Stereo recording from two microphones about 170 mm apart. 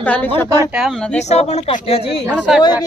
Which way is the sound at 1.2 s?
40° left (ahead or behind).